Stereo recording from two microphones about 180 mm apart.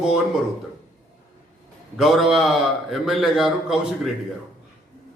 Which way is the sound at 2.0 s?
Centre (ahead or behind).